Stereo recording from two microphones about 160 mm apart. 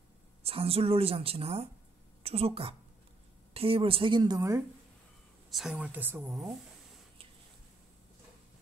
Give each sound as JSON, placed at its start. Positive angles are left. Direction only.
{"t": 0.4, "sound": "a woman's voice", "side_deg": -35}
{"t": 5.5, "sound": "a woman's voice", "side_deg": 0}
{"t": 6.3, "sound": "speech", "side_deg": 0}